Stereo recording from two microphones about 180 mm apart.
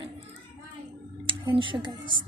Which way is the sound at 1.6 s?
25° right (ahead or behind).